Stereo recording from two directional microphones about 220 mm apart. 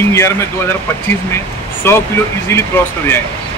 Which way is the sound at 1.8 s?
10° left (ahead or behind).